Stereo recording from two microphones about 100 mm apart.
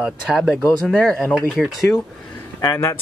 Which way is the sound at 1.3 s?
10° right (ahead or behind).